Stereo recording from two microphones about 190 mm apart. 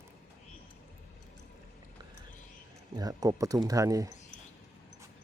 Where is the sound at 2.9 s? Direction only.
20° right (ahead or behind).